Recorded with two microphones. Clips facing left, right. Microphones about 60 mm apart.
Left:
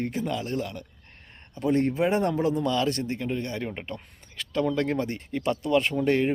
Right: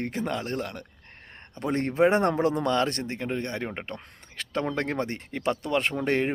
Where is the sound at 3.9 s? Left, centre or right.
Right.